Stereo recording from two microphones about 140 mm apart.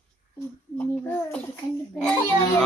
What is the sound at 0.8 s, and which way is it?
Speech, 10° left (ahead or behind).